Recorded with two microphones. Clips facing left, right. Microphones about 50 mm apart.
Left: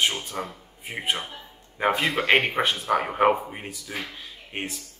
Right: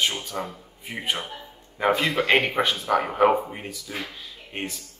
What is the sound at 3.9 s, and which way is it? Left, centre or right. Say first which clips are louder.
Speech: even; centre.